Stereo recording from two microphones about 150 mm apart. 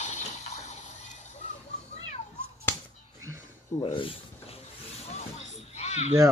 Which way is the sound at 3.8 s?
35° left (ahead or behind).